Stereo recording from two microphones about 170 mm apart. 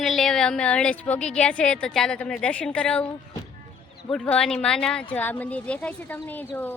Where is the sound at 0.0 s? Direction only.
Centre (ahead or behind).